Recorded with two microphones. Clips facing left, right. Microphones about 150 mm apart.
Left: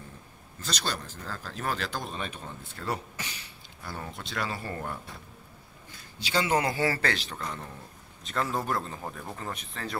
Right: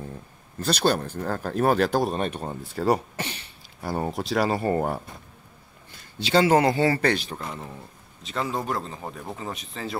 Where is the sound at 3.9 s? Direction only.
80° right.